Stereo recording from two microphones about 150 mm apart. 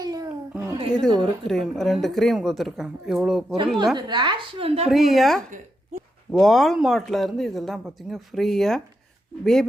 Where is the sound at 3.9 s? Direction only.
30° right (ahead or behind).